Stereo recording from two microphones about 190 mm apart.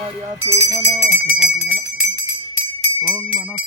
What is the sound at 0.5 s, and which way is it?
Speech, 15° right (ahead or behind).